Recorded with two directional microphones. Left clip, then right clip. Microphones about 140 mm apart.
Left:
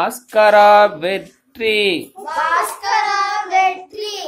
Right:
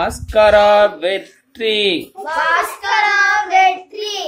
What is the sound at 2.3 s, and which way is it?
Child singing, 20° right (ahead or behind).